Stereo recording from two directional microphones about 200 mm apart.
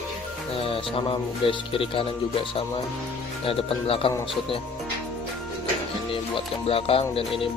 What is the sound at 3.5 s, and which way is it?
Speech, 30° left (ahead or behind).